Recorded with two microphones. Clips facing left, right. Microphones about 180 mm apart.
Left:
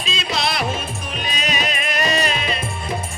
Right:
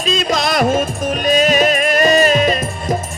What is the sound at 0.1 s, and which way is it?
Music, 45° right (ahead or behind).